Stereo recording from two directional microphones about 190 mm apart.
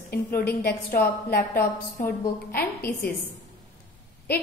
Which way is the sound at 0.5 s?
55° left (ahead or behind).